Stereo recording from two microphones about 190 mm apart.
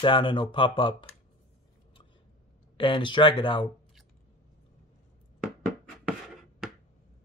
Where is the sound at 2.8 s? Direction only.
25° left (ahead or behind).